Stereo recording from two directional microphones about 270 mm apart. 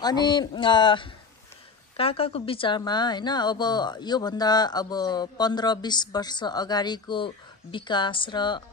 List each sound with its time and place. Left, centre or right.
0.0 s a woman's voice: centre